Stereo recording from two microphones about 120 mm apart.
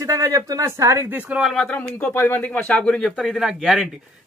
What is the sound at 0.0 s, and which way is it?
Speech, 30° right (ahead or behind).